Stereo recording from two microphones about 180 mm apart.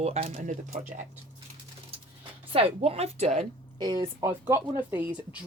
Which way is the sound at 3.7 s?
25° right (ahead or behind).